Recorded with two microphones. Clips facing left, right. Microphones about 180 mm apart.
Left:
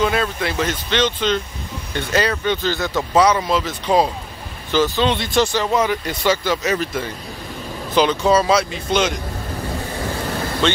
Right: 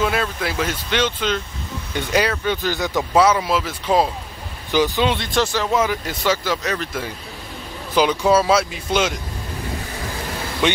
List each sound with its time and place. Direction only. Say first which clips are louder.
0.0 s speech: left 2 dB; 5° right (ahead or behind)
4.6 s speech: left 1 dB; 15° right (ahead or behind)
5.1 s speech: left 2 dB; centre (ahead or behind)
7.9 s speech: left 1 dB; 10° right (ahead or behind)
10.6 s speech: even; 15° right (ahead or behind)